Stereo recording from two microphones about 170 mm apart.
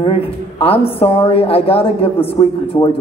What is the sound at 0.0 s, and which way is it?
A woman's voice, 35° left (ahead or behind).